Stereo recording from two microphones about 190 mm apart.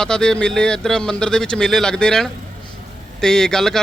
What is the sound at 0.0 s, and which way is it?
Speech, 5° left (ahead or behind).